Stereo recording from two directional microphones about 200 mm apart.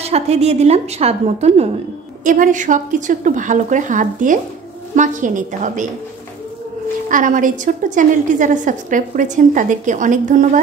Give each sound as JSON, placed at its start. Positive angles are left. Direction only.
{"t": 0.0, "sound": "a woman's voice", "side_deg": -30}
{"t": 7.1, "sound": "a woman's voice", "side_deg": -40}